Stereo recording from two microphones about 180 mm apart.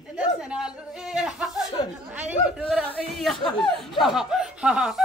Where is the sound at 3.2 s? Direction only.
Centre (ahead or behind).